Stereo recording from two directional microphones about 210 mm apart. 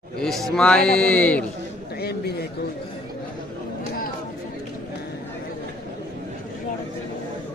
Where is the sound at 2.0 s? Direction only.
50° left (ahead or behind).